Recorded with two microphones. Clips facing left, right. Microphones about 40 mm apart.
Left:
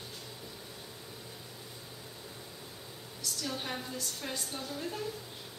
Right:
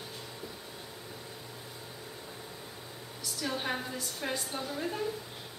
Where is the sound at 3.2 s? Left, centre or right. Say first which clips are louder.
Right 3 dB; centre.